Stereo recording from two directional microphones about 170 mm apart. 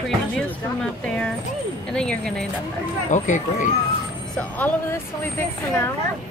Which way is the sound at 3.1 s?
45° left (ahead or behind).